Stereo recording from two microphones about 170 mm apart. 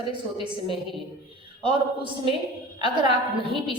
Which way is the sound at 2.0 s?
30° right (ahead or behind).